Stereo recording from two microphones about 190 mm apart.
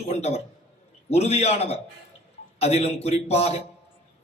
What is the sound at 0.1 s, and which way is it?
A man's voice, 35° left (ahead or behind).